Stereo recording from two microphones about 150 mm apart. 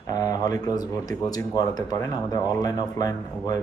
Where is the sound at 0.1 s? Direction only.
25° left (ahead or behind).